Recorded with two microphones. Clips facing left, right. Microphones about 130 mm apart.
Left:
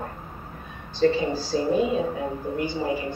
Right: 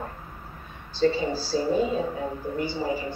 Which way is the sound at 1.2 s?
15° left (ahead or behind).